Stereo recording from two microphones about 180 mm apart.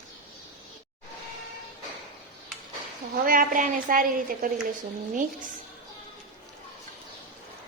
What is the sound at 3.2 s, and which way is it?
A woman's voice, 50° right (ahead or behind).